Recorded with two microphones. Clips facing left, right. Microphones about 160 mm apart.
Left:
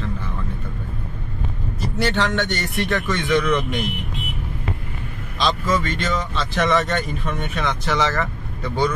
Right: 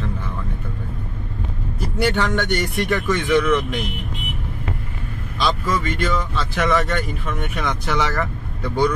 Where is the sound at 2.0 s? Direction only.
10° right (ahead or behind).